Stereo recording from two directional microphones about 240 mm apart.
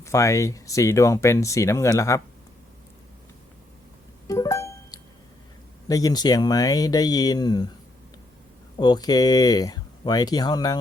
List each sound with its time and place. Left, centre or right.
0.0 s speech: centre
4.3 s music: centre
5.9 s speech: centre
8.8 s speech: centre